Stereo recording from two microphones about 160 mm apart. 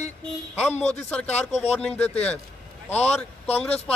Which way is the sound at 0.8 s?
10° left (ahead or behind).